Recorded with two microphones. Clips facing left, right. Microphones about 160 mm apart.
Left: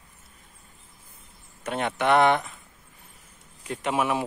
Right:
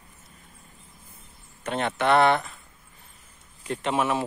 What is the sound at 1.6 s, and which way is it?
Speech, 10° left (ahead or behind).